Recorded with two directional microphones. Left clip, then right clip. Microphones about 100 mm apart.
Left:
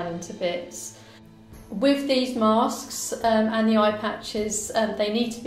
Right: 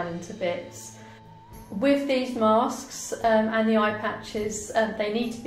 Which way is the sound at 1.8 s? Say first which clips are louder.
Left 1 dB; 35° left (ahead or behind).